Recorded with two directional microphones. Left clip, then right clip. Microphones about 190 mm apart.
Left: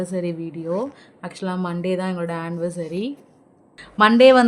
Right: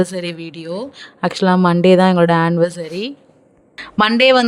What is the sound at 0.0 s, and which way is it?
Speech, 50° right (ahead or behind).